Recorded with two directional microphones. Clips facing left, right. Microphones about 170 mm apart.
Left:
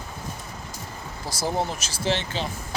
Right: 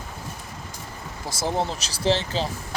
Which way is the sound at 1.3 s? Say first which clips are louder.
Right 1 dB; 25° right (ahead or behind).